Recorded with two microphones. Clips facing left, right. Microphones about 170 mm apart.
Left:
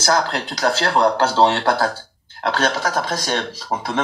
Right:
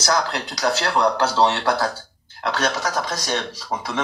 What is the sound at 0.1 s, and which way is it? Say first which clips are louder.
Speech: left 3 dB; 30° left (ahead or behind).